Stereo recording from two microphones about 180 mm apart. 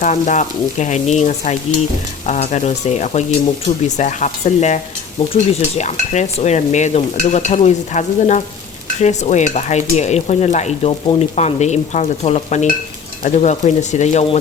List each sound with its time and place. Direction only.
0.0 s stir: 45° left (ahead or behind)